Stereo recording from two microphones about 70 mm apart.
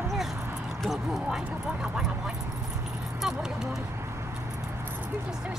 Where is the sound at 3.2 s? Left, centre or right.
Centre.